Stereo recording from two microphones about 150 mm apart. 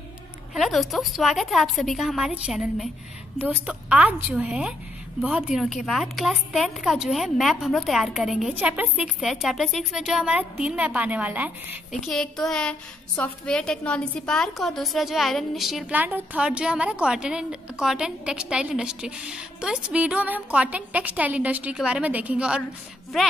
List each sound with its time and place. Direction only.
0.6 s a woman's voice: centre (ahead or behind)
12.1 s a woman's voice: 5° left (ahead or behind)